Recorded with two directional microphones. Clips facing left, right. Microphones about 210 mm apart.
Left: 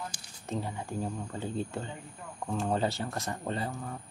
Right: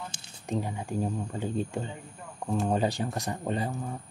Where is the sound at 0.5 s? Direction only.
15° right (ahead or behind).